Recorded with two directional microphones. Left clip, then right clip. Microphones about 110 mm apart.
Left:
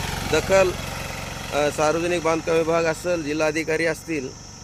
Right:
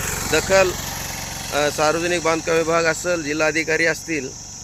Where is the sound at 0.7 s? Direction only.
40° left (ahead or behind); by 1.5 s 20° left (ahead or behind).